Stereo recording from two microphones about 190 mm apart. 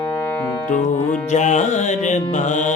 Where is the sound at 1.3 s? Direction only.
40° left (ahead or behind).